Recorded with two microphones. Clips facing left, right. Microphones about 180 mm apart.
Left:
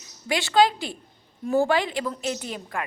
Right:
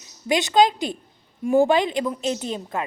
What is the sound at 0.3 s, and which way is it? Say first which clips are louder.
A woman's voice: right 2 dB; 20° right (ahead or behind).